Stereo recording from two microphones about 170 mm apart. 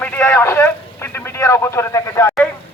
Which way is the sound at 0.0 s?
10° left (ahead or behind).